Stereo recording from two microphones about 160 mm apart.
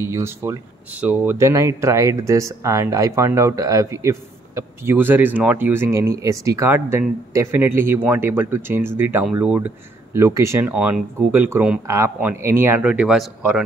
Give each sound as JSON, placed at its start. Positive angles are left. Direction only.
{"t": 0.0, "sound": "speech", "side_deg": -15}